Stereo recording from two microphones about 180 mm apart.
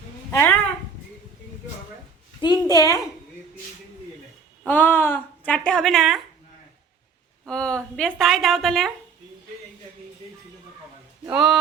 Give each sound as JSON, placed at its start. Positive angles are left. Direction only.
{"t": 0.3, "sound": "speech", "side_deg": 15}
{"t": 2.4, "sound": "a woman's voice", "side_deg": 20}
{"t": 4.6, "sound": "speech", "side_deg": 10}
{"t": 7.4, "sound": "a woman's voice", "side_deg": 5}
{"t": 11.3, "sound": "a woman's voice", "side_deg": 0}